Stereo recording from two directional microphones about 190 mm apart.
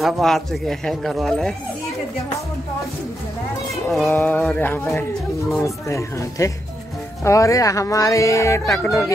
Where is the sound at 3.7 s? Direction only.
Centre (ahead or behind).